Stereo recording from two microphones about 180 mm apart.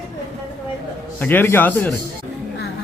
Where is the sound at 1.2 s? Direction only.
10° left (ahead or behind).